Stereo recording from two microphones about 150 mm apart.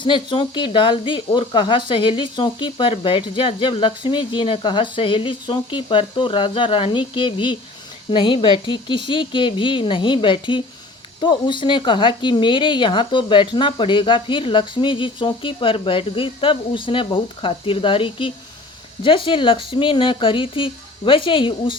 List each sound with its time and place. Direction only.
0.0 s speech: 30° left (ahead or behind)